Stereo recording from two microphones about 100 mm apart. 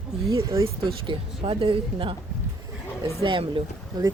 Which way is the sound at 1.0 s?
65° right (ahead or behind).